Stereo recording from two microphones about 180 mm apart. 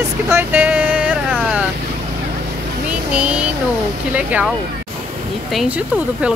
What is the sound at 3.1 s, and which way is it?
Speech, 5° right (ahead or behind).